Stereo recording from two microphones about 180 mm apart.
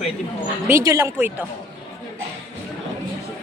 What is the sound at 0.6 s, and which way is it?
Speech, 15° right (ahead or behind).